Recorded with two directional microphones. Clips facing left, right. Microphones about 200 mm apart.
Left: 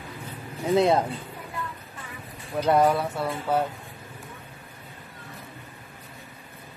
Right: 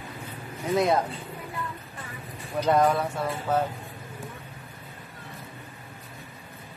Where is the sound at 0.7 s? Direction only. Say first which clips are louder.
Left 3 dB; 25° left (ahead or behind).